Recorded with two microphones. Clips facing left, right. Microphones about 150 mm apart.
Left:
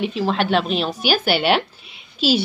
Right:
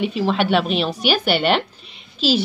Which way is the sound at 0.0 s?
Centre (ahead or behind).